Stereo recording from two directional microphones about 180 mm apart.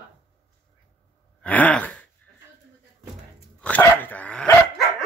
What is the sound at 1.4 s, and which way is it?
Sigh, 10° left (ahead or behind).